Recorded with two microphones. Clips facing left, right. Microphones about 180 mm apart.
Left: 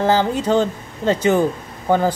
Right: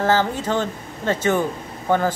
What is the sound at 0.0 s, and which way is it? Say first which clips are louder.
Speech: left 3 dB; 15° left (ahead or behind).